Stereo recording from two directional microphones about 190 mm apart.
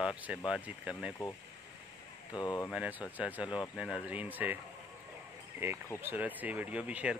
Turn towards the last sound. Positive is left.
turn(degrees=-5)  # may be behind; listen again after turning